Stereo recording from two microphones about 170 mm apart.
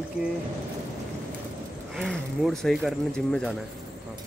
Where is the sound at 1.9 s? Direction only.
Centre (ahead or behind).